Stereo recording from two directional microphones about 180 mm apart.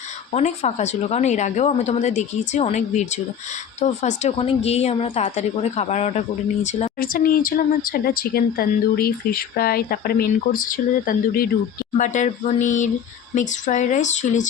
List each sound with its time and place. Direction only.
0.3 s a woman's voice: 40° left (ahead or behind)
7.0 s speech: 55° left (ahead or behind)